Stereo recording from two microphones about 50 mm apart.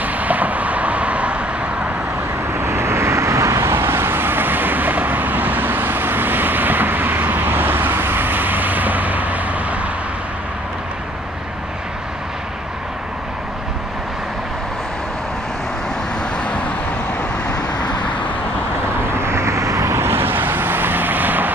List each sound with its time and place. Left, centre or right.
0.0 s vehicle: right
2.6 s vehicle: right
3.7 s vehicle: right
19.1 s vehicle: right